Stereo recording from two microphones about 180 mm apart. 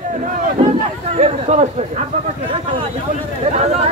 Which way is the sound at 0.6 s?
35° right (ahead or behind).